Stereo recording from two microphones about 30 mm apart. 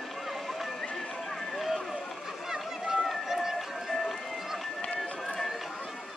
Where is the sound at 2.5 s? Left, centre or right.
Centre.